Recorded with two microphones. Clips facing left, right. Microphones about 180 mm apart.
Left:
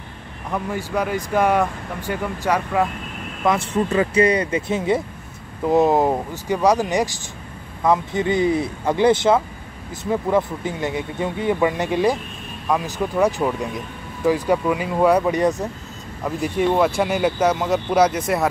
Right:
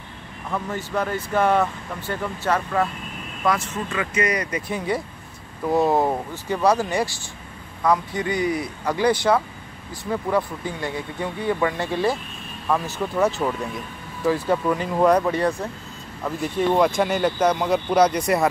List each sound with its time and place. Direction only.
0.5 s speech: 10° left (ahead or behind)
3.4 s speech: 30° left (ahead or behind); by 18.5 s centre (ahead or behind)